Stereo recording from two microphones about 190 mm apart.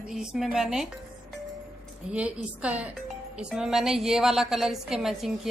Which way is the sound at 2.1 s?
5° right (ahead or behind).